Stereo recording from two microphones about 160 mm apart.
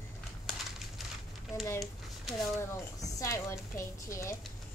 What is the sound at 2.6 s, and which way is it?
Speech, 20° left (ahead or behind).